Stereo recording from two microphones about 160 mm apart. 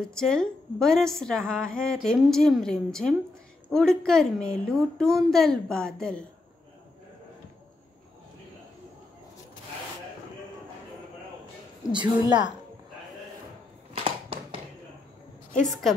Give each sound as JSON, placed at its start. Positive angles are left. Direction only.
{"t": 0.0, "sound": "a woman's voice", "side_deg": 5}
{"t": 11.9, "sound": "a woman's voice", "side_deg": -30}
{"t": 14.0, "sound": "a sound", "side_deg": -35}